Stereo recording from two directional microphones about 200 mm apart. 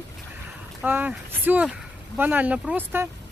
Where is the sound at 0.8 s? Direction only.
10° right (ahead or behind).